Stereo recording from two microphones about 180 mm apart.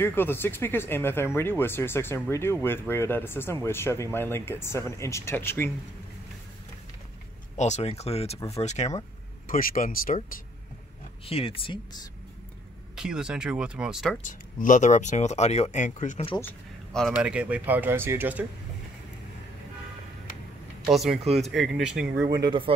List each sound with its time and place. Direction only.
0.0 s speech: 10° left (ahead or behind)
7.5 s speech: 40° left (ahead or behind)
9.5 s speech: 50° left (ahead or behind)
11.2 s speech: 30° left (ahead or behind)
12.9 s speech: 5° right (ahead or behind)
14.2 s speech: 45° left (ahead or behind)
16.9 s speech: centre (ahead or behind)
20.9 s speech: centre (ahead or behind)
22.4 s speech: 25° right (ahead or behind)